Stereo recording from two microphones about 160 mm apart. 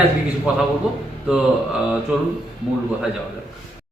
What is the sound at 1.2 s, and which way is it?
Speech, 5° right (ahead or behind).